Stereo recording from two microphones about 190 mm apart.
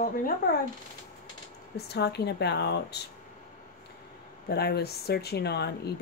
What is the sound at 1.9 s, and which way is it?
Speech, 60° left (ahead or behind).